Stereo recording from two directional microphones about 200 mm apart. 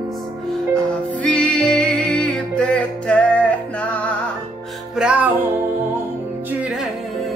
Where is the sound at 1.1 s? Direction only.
5° left (ahead or behind).